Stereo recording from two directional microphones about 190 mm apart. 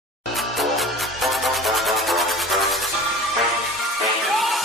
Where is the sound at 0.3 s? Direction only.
Centre (ahead or behind).